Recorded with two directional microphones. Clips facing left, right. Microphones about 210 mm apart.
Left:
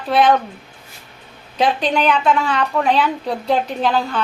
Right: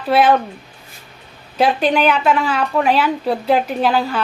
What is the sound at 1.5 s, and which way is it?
A woman's voice, 5° right (ahead or behind).